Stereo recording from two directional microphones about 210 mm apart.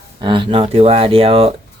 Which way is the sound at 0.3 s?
25° right (ahead or behind).